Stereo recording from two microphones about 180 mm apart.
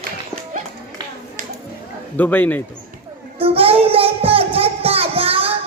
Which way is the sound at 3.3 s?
30° right (ahead or behind).